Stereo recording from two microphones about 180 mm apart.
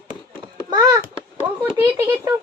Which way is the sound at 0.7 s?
20° right (ahead or behind).